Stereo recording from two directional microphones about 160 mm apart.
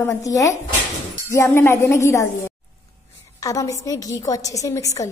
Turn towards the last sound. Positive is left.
turn(degrees=20)  # may be behind; listen again after turning